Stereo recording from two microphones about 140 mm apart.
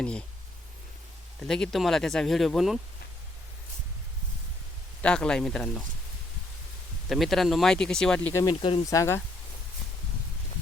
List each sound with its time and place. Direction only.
0.0 s speech: 5° left (ahead or behind)
1.4 s speech: 5° left (ahead or behind)
5.0 s speech: 5° left (ahead or behind)
7.1 s speech: centre (ahead or behind)
8.3 s speech: 20° left (ahead or behind)